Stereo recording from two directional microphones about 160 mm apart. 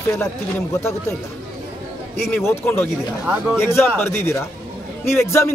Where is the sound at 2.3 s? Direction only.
15° left (ahead or behind).